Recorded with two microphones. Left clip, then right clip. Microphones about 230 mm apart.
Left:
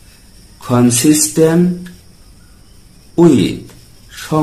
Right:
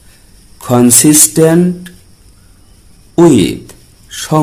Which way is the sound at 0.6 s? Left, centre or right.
Right.